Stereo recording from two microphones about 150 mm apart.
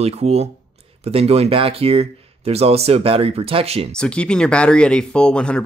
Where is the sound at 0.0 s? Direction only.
45° right (ahead or behind).